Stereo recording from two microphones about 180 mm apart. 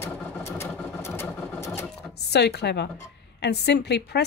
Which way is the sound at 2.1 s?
65° left (ahead or behind).